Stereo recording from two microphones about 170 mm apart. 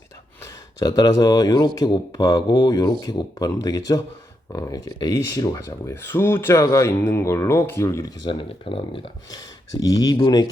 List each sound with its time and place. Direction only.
0.8 s speech: 25° left (ahead or behind)